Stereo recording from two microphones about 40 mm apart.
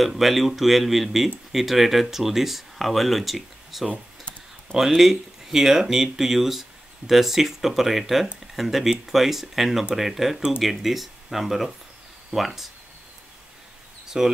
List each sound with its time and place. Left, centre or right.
0.0 s speech: centre
14.2 s speech: centre